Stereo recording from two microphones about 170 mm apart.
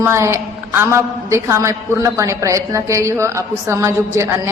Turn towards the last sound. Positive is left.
turn(degrees=-15)  # may be behind; listen again after turning